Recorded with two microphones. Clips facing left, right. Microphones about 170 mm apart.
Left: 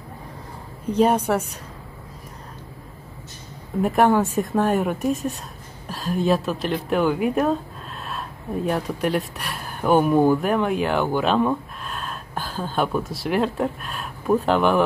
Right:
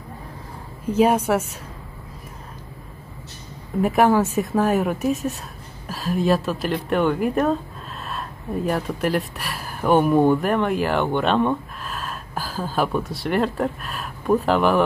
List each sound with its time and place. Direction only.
0.9 s a woman's voice: 10° right (ahead or behind)
3.8 s a woman's voice: 5° right (ahead or behind)